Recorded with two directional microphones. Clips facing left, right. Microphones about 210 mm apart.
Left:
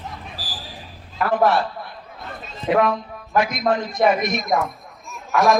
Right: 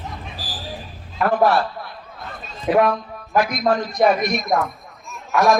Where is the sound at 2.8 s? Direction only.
20° left (ahead or behind).